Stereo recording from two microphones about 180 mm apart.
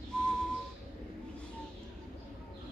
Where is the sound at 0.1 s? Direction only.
5° left (ahead or behind).